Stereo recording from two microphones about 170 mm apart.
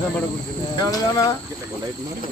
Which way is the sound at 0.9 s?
20° left (ahead or behind).